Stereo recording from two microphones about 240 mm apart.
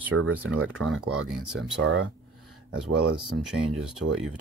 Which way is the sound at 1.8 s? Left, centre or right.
Right.